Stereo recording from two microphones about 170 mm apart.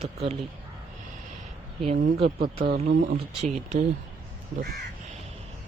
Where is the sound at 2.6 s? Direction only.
55° right (ahead or behind).